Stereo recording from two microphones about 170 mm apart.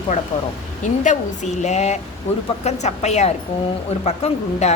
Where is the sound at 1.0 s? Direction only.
45° left (ahead or behind).